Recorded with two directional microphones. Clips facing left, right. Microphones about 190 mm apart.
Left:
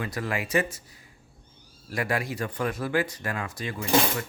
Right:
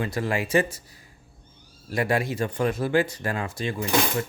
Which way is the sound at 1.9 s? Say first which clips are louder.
Right 4 dB; 25° right (ahead or behind).